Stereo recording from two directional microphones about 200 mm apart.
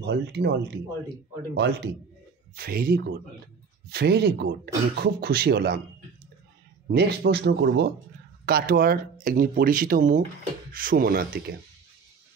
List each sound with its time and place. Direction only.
0.0 s speech: 60° right (ahead or behind)
6.9 s speech: 50° right (ahead or behind)
8.5 s speech: 45° right (ahead or behind)